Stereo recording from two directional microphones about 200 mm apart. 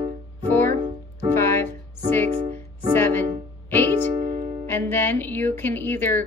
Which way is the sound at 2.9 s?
10° left (ahead or behind).